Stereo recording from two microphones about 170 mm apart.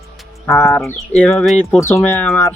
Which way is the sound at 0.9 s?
5° left (ahead or behind).